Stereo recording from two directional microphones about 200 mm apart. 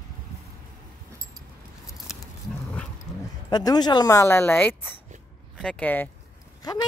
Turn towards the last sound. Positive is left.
turn(degrees=20)  # may be behind; listen again after turning